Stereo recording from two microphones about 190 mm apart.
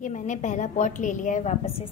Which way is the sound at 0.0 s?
40° left (ahead or behind).